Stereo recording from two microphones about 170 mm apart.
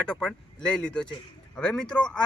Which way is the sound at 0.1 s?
5° left (ahead or behind).